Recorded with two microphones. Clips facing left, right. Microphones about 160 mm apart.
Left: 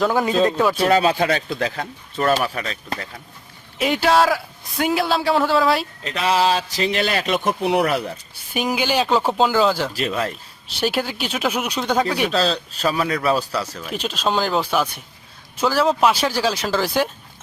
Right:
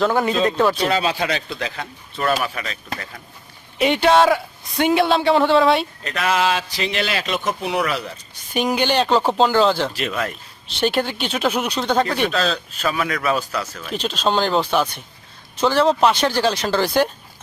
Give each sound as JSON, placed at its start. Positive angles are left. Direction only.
{"t": 0.4, "sound": "a man's voice", "side_deg": 5}
{"t": 0.9, "sound": "a man's voice", "side_deg": 45}
{"t": 3.8, "sound": "a man's voice", "side_deg": 0}
{"t": 6.1, "sound": "a man's voice", "side_deg": 30}
{"t": 8.5, "sound": "a man's voice", "side_deg": 5}
{"t": 9.9, "sound": "a man's voice", "side_deg": 35}
{"t": 10.8, "sound": "speech", "side_deg": 5}
{"t": 12.3, "sound": "a man's voice", "side_deg": 35}
{"t": 13.7, "sound": "a man's voice", "side_deg": 10}